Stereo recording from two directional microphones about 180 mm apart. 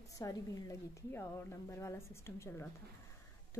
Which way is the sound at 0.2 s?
20° left (ahead or behind).